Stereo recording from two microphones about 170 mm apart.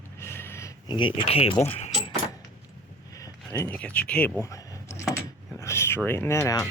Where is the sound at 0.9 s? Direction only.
30° left (ahead or behind).